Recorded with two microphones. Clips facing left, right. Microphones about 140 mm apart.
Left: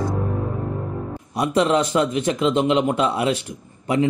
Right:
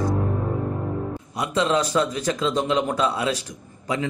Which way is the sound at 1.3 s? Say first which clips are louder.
Left 4 dB; 20° left (ahead or behind).